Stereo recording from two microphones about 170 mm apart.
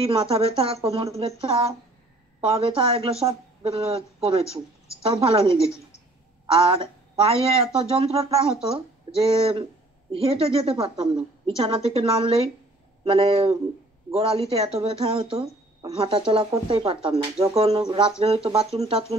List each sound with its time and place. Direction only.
0.0 s speech: 35° right (ahead or behind)
17.7 s speech: 25° right (ahead or behind)
18.2 s speech: 35° right (ahead or behind)